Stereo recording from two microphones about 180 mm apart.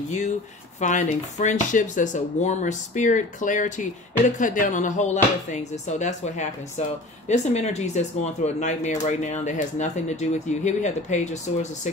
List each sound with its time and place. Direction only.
0.7 s speech: 45° left (ahead or behind)